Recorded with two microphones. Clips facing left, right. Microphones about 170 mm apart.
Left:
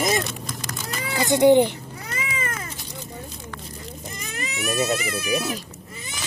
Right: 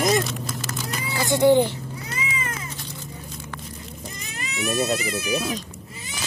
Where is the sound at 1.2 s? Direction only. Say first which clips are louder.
Left 2 dB; 20° left (ahead or behind).